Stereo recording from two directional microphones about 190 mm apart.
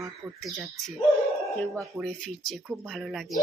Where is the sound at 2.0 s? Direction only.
5° left (ahead or behind).